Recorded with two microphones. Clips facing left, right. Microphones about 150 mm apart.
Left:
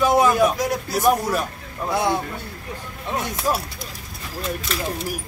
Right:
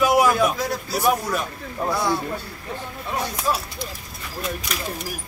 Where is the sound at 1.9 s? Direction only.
20° left (ahead or behind).